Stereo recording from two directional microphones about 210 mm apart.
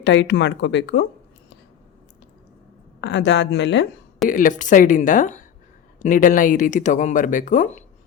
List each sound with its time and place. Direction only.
0.0 s speech: 60° left (ahead or behind)
3.0 s speech: 55° left (ahead or behind)
4.3 s speech: 40° left (ahead or behind)